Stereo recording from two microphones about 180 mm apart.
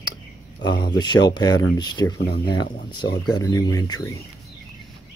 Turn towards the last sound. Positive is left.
turn(degrees=20)  # may be behind; listen again after turning